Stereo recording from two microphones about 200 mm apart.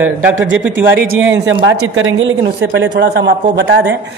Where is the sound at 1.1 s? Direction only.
70° right (ahead or behind).